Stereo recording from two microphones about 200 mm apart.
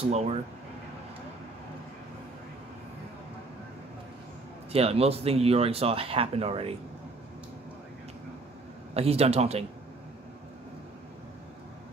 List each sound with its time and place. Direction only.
0.0 s speech: 30° right (ahead or behind)
4.7 s speech: 30° right (ahead or behind)
8.9 s speech: 30° right (ahead or behind)